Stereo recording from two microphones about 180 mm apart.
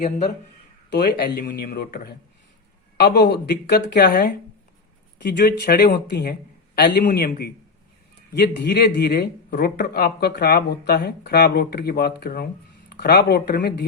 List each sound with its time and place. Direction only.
0.9 s speech: 65° left (ahead or behind)